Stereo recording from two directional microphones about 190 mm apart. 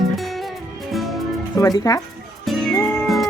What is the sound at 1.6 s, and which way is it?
Speech, 20° left (ahead or behind).